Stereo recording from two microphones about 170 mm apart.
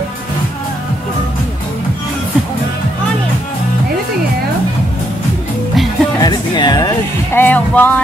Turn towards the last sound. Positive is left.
turn(degrees=10)  # may be behind; listen again after turning